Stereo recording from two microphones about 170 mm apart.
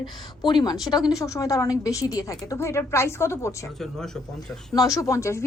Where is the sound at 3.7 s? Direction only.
Centre (ahead or behind).